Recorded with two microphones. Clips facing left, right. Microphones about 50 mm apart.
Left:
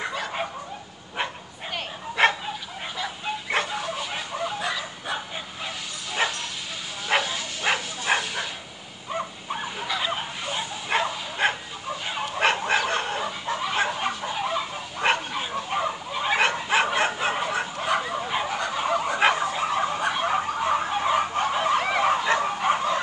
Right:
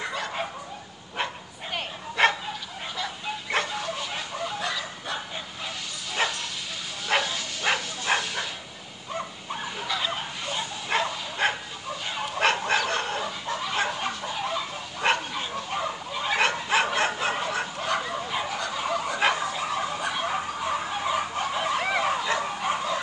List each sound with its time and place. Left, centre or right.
0.1 s bow-wow: centre
2.2 s bow-wow: centre
9.1 s dog: left
9.8 s bow-wow: centre; by 21.8 s left
22.0 s dog: left